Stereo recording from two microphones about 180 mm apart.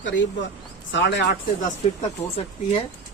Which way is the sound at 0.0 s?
90° left.